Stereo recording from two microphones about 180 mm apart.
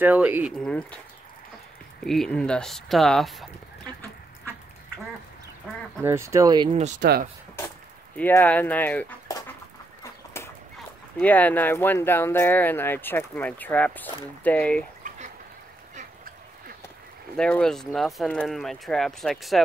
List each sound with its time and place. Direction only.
0.0 s speech: 10° right (ahead or behind)
0.6 s speech: 5° left (ahead or behind)
2.0 s speech: 5° left (ahead or behind)
6.0 s speech: 15° right (ahead or behind)
6.7 s speech: 40° right (ahead or behind)
8.2 s speech: 10° left (ahead or behind)
10.3 s dog: 15° left (ahead or behind)
11.1 s speech: 10° left (ahead or behind)
15.0 s a sound: 45° right (ahead or behind)
15.9 s duck: 50° right (ahead or behind)
17.4 s speech: 5° left (ahead or behind)